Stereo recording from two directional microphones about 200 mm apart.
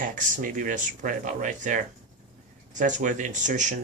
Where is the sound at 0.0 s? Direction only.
40° right (ahead or behind).